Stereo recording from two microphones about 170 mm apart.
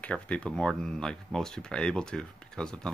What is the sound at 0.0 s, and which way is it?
Speech, 5° left (ahead or behind).